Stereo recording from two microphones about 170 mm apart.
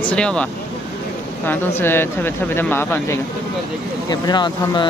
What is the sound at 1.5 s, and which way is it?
Speech, 15° left (ahead or behind).